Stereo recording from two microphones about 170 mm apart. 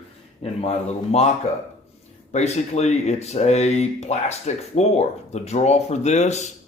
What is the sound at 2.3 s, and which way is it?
Speech, 40° left (ahead or behind).